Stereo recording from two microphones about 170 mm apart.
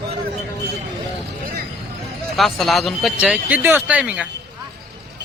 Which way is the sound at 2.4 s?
Centre (ahead or behind).